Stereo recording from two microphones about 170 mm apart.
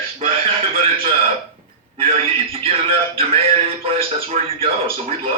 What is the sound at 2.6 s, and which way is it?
A man's voice, 35° right (ahead or behind).